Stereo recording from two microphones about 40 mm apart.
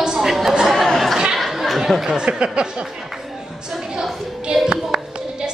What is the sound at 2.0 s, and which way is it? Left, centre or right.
Speech, right.